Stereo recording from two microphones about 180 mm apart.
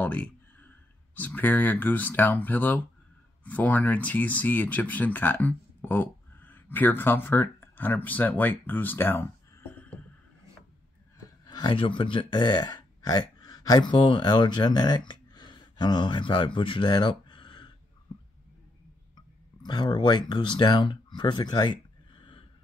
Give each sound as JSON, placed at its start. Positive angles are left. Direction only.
{"t": 0.0, "sound": "speech", "side_deg": 10}
{"t": 11.4, "sound": "speech", "side_deg": 25}
{"t": 19.1, "sound": "speech", "side_deg": 25}